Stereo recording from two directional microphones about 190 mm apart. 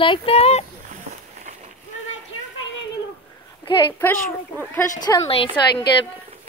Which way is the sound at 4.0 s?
10° left (ahead or behind).